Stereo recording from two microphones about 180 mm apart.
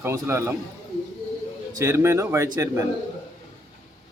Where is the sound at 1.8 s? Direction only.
15° right (ahead or behind).